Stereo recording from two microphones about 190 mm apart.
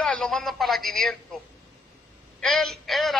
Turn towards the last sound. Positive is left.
turn(degrees=0)  # may be behind; listen again after turning